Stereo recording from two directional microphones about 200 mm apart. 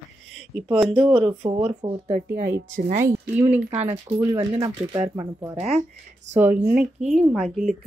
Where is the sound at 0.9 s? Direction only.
25° right (ahead or behind).